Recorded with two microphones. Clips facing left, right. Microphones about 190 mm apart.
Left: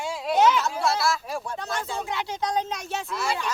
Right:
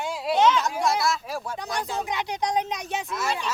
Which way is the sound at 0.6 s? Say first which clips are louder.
Even; 15° right (ahead or behind).